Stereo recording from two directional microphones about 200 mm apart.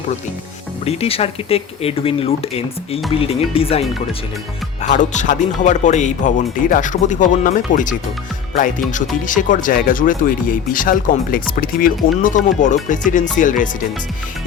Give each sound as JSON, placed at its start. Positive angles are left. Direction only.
{"t": 0.9, "sound": "speech", "side_deg": 30}